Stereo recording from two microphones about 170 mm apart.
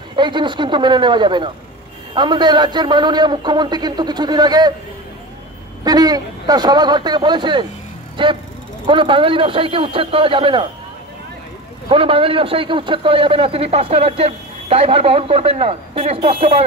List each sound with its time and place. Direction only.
0.1 s a man's voice: 25° right (ahead or behind)
5.9 s a man's voice: 25° right (ahead or behind)
11.9 s a man's voice: 30° right (ahead or behind)